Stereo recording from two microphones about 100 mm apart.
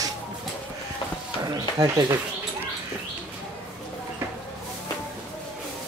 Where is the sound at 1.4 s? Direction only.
35° right (ahead or behind).